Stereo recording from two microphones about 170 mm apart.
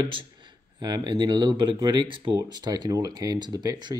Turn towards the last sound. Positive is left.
turn(degrees=-25)  # may be behind; listen again after turning